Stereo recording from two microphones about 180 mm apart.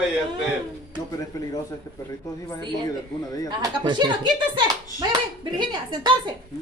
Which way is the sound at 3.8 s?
25° right (ahead or behind).